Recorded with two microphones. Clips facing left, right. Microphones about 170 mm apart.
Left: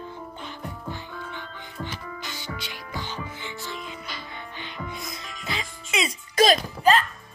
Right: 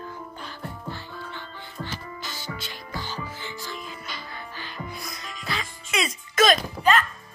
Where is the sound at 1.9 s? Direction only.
40° right (ahead or behind).